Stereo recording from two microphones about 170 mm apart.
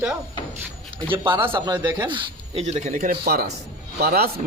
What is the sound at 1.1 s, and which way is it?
Speech, 30° right (ahead or behind).